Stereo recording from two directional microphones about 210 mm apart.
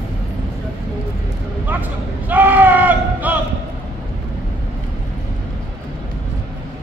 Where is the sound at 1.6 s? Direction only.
10° right (ahead or behind).